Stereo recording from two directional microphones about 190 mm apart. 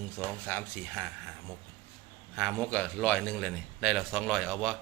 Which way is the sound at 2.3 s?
Centre (ahead or behind).